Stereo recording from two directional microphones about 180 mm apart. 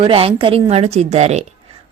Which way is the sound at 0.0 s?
30° right (ahead or behind).